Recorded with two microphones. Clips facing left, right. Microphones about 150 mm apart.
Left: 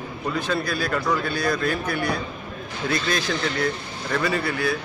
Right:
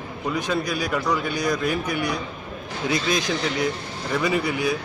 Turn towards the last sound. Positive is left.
turn(degrees=-15)  # may be behind; listen again after turning